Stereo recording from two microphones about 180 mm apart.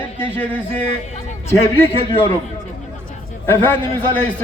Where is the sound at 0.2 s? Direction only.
10° left (ahead or behind).